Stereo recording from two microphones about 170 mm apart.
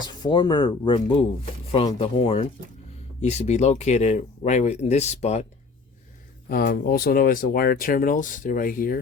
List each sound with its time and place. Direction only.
0.0 s speech: 25° left (ahead or behind); by 5.5 s 40° left (ahead or behind)
6.5 s speech: 55° left (ahead or behind)